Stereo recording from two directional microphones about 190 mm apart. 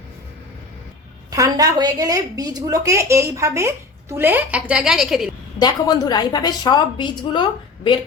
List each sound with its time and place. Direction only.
1.3 s a woman's voice: 20° right (ahead or behind); by 5.3 s centre (ahead or behind)
5.5 s a woman's voice: 20° left (ahead or behind)